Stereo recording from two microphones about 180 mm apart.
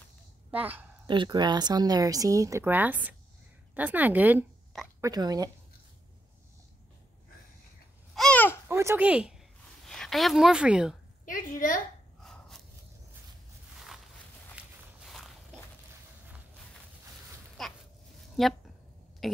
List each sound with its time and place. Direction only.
0.5 s a woman's voice: 10° right (ahead or behind)
1.0 s a woman's voice: 25° right (ahead or behind); by 4.5 s 10° right (ahead or behind)
5.0 s speech: 20° right (ahead or behind)
8.1 s babbling: 5° left (ahead or behind)
8.6 s a woman's voice: 15° right (ahead or behind)
11.2 s a woman's voice: 50° left (ahead or behind)
12.2 s a sound: centre (ahead or behind)
14.6 s walk: 5° right (ahead or behind)
17.6 s a sound: centre (ahead or behind)
18.4 s speech: centre (ahead or behind)
19.2 s burping: centre (ahead or behind)